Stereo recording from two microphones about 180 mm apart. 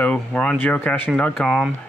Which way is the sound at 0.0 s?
5° left (ahead or behind).